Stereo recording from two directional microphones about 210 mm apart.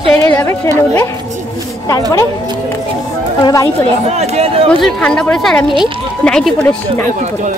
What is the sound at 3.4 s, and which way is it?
Speech, 15° left (ahead or behind).